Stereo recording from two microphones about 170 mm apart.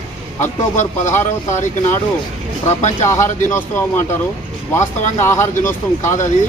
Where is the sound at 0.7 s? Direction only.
45° left (ahead or behind).